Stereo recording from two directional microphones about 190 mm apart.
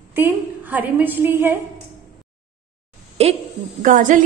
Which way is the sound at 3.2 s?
30° right (ahead or behind).